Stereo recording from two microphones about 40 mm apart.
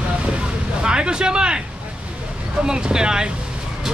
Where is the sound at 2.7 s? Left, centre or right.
Centre.